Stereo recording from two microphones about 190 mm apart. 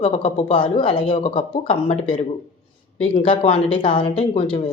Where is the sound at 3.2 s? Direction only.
30° left (ahead or behind).